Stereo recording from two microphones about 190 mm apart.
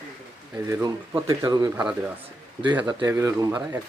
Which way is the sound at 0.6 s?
15° right (ahead or behind).